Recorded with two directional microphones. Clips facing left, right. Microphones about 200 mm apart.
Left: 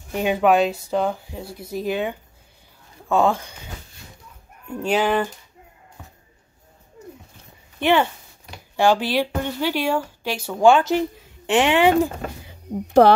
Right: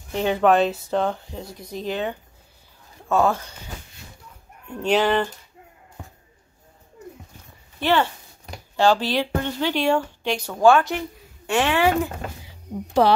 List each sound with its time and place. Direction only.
0.1 s speech: 10° left (ahead or behind)
4.8 s speech: 10° left (ahead or behind)
7.8 s speech: 15° left (ahead or behind)
10.6 s speech: 20° left (ahead or behind)
12.4 s a sound: 50° left (ahead or behind)